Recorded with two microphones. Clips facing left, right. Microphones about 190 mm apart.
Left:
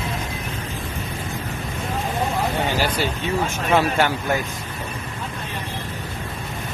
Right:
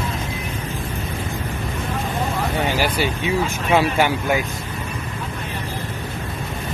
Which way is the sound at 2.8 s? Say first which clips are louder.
Right 2 dB; 10° right (ahead or behind).